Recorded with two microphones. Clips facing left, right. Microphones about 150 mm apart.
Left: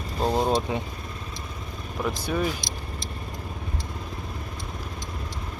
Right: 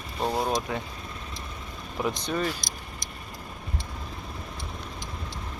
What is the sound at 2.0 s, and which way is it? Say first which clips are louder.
Speech: left 1 dB; 5° left (ahead or behind).